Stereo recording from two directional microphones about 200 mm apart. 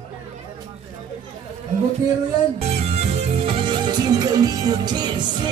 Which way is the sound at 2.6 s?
30° right (ahead or behind).